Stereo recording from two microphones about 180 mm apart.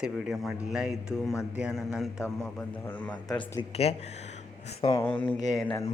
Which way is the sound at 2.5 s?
10° left (ahead or behind).